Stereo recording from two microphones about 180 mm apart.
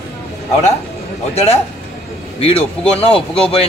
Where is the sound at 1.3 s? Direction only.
35° left (ahead or behind).